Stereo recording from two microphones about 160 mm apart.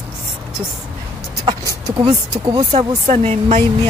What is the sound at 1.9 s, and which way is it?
Speech, 30° right (ahead or behind).